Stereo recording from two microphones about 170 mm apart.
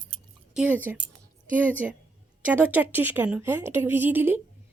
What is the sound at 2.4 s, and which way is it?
A woman's voice, 10° right (ahead or behind).